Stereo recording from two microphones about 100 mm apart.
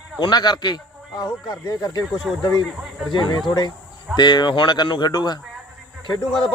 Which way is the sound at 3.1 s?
50° left (ahead or behind).